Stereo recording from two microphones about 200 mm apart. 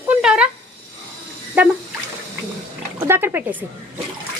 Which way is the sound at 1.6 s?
10° right (ahead or behind).